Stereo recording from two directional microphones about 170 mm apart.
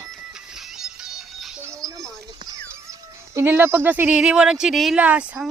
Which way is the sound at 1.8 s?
20° right (ahead or behind).